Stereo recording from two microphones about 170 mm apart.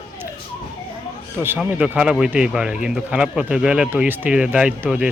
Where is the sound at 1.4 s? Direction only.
10° right (ahead or behind).